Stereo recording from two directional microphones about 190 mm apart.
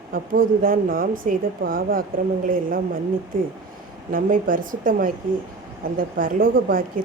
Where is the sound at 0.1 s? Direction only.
50° right (ahead or behind).